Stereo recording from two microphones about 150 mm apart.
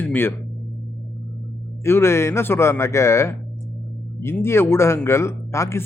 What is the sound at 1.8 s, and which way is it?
Speech, 15° left (ahead or behind).